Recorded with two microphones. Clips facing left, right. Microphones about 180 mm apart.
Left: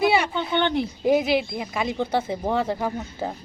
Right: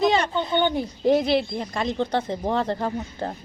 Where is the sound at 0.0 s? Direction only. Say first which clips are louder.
Even; 10° left (ahead or behind).